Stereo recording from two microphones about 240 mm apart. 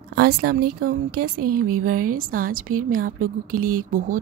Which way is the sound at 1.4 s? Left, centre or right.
Right.